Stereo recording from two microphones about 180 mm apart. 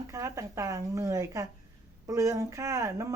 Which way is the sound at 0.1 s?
15° right (ahead or behind).